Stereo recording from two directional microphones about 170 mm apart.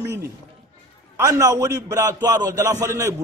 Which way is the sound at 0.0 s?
15° right (ahead or behind).